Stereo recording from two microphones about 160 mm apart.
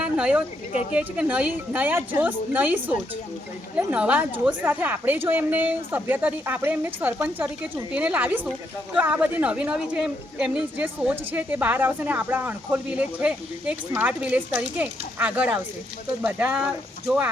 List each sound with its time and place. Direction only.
0.0 s a sound: 5° right (ahead or behind)
0.7 s speech: 40° left (ahead or behind)
0.9 s a woman's voice: 5° right (ahead or behind)